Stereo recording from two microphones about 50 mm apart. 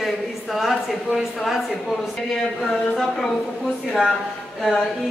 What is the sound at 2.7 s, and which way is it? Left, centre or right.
Speech, centre.